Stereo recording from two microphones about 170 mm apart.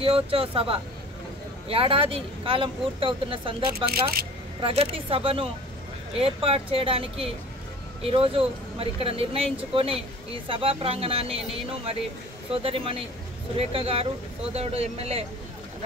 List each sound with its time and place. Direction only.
0.0 s speech: 35° right (ahead or behind)
3.7 s speech: 65° right (ahead or behind)
4.6 s speech: 35° right (ahead or behind)